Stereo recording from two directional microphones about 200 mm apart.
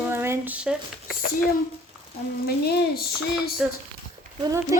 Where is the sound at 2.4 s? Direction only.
50° left (ahead or behind).